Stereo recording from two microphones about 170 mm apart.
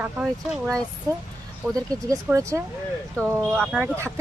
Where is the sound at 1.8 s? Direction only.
20° right (ahead or behind).